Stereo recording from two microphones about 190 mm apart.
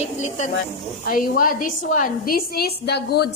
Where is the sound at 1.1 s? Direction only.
50° left (ahead or behind).